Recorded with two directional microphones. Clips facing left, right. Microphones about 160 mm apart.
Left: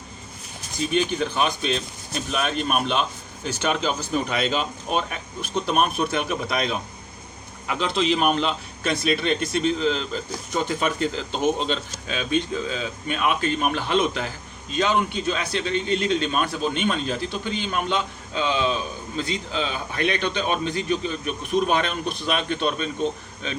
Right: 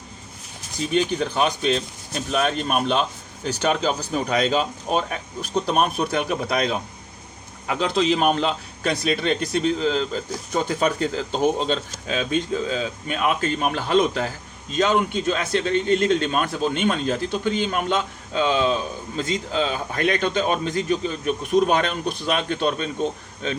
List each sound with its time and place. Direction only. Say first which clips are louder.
0.9 s a man's voice: right 2 dB; 40° right (ahead or behind)